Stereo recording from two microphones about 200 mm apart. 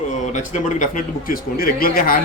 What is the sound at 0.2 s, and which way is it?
A man's voice, 35° left (ahead or behind).